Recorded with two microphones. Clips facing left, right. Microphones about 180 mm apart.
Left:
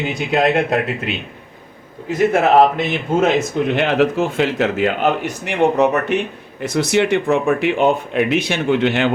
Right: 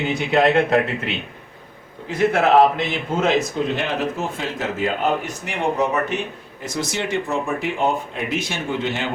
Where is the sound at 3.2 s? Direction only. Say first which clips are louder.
Left 1 dB; 65° left (ahead or behind).